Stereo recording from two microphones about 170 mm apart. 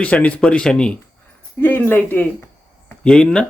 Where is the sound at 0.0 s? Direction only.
10° left (ahead or behind).